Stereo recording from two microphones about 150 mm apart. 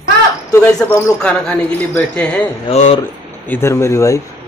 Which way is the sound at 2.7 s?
45° left (ahead or behind).